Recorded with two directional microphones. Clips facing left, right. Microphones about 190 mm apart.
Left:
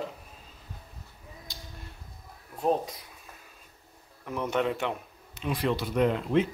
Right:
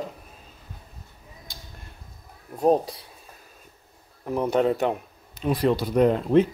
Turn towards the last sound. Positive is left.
turn(degrees=-40)  # may be behind; listen again after turning